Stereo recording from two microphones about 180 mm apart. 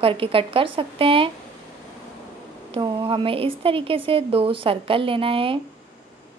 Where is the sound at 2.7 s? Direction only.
30° right (ahead or behind).